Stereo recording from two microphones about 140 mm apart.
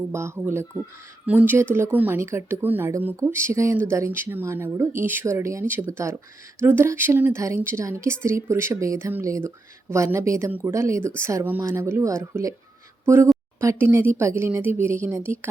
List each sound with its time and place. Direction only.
0.1 s a woman's voice: 20° right (ahead or behind)